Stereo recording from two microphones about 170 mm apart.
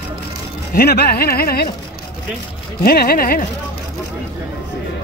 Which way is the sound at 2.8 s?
65° left (ahead or behind).